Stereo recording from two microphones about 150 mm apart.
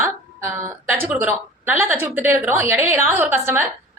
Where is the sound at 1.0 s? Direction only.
10° right (ahead or behind).